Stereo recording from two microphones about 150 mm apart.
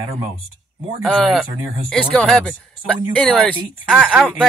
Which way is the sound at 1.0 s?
Centre (ahead or behind).